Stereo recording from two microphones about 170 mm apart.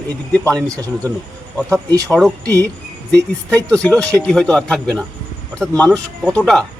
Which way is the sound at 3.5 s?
5° left (ahead or behind).